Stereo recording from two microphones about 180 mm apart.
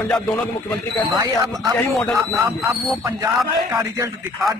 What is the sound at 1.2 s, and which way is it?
Speech, 20° right (ahead or behind).